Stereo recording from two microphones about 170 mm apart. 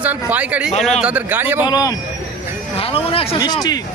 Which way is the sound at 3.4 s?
25° left (ahead or behind).